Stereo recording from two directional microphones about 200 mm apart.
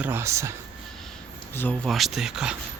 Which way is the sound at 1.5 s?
5° left (ahead or behind).